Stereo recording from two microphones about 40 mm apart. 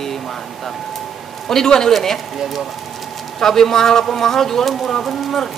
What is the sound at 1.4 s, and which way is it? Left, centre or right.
Speech, centre.